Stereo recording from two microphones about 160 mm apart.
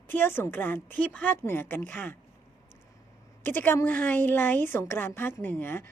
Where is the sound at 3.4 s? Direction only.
15° left (ahead or behind).